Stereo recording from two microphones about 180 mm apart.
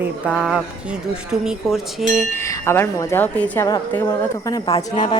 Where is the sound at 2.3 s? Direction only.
15° left (ahead or behind).